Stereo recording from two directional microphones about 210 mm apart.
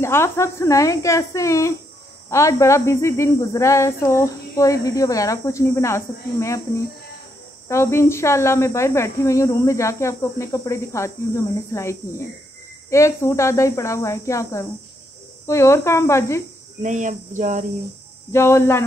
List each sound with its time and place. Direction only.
0.0 s speech: 10° left (ahead or behind)
16.8 s cricket: 35° right (ahead or behind)
18.3 s speech: 10° left (ahead or behind)